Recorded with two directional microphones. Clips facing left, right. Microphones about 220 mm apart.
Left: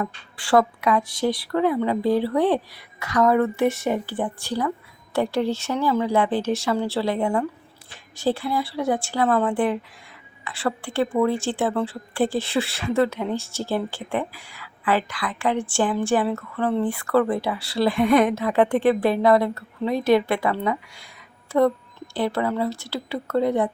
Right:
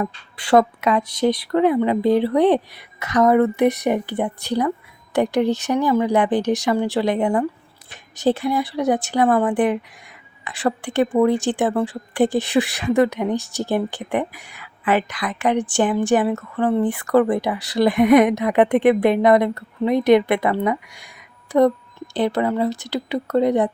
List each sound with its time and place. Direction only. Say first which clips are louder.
0.0 s a woman's voice: right 3 dB; 20° right (ahead or behind)